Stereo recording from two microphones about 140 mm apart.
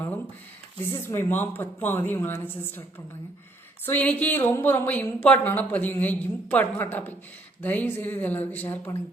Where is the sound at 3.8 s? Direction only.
15° left (ahead or behind).